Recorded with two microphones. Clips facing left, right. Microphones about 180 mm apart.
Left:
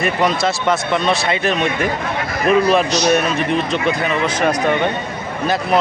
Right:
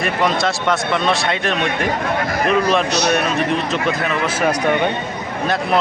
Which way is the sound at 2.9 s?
65° right (ahead or behind).